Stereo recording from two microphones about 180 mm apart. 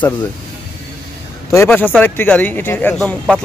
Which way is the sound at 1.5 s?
10° left (ahead or behind).